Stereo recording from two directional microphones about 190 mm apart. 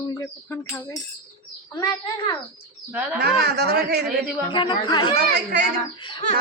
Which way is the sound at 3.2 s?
60° right (ahead or behind).